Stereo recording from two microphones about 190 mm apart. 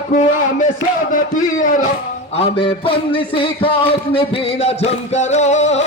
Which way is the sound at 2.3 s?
25° left (ahead or behind).